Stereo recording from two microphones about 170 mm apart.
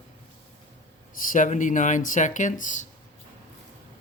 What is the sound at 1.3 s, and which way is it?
Speech, 50° left (ahead or behind).